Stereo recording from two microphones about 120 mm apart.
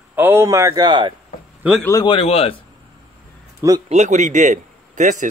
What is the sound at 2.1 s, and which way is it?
Speech, 55° left (ahead or behind).